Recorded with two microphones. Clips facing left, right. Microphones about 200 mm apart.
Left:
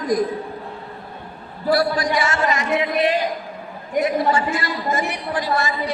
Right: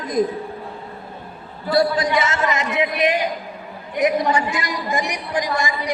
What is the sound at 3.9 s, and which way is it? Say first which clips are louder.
A woman's voice: even; 15° right (ahead or behind).